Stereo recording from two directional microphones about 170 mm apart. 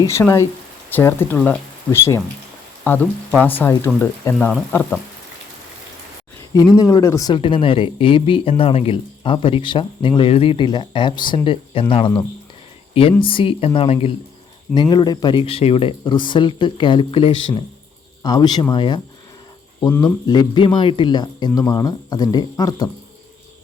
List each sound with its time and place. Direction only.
0.0 s speech: 15° left (ahead or behind)
6.7 s speech: 20° left (ahead or behind)
20.2 s speech: 25° left (ahead or behind)